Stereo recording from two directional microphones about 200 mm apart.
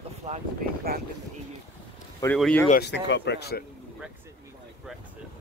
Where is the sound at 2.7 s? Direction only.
55° left (ahead or behind).